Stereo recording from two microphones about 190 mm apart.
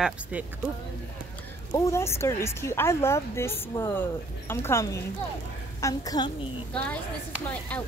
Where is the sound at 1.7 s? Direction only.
15° left (ahead or behind).